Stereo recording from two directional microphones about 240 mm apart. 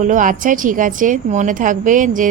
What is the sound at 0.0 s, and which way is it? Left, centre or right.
Speech, right.